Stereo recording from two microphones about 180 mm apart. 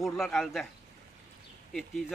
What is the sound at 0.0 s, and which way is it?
Speech, centre (ahead or behind).